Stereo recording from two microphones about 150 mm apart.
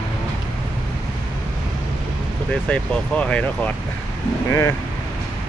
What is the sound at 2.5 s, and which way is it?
Speech, 5° left (ahead or behind).